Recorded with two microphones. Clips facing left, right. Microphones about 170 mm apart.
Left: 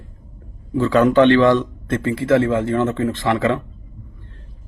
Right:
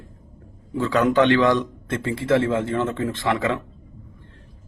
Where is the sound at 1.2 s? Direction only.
10° right (ahead or behind).